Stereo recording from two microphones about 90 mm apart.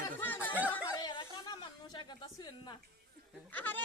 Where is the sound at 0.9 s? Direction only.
55° left (ahead or behind).